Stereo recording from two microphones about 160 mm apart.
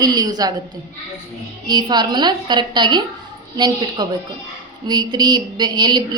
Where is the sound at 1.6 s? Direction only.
25° right (ahead or behind).